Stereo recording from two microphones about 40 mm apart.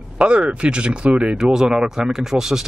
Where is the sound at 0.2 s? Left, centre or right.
Right.